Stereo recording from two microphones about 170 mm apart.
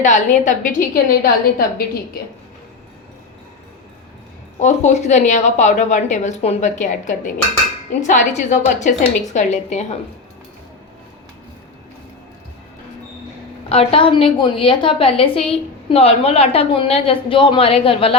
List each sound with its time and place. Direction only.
0.0 s a woman's voice: 45° left (ahead or behind)
4.6 s a woman's voice: 40° left (ahead or behind)
13.7 s a woman's voice: 35° left (ahead or behind)